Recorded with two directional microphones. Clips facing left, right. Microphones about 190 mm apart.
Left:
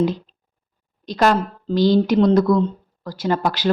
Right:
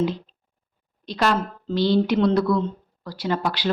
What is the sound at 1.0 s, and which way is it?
Speech, 45° left (ahead or behind).